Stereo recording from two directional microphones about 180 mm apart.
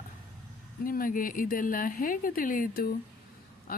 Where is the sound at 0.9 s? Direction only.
50° left (ahead or behind).